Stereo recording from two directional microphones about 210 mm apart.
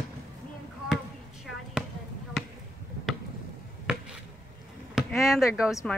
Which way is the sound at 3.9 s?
5° right (ahead or behind).